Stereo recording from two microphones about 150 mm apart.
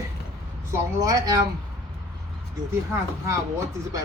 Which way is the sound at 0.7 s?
20° right (ahead or behind).